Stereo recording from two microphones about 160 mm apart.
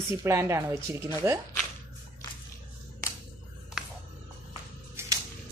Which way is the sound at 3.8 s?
5° right (ahead or behind).